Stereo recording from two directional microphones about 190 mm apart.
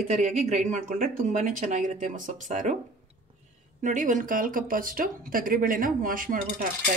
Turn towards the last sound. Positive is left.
turn(degrees=-45)  # may be behind; listen again after turning